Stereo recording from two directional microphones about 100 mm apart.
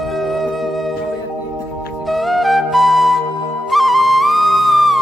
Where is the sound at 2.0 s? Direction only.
Centre (ahead or behind).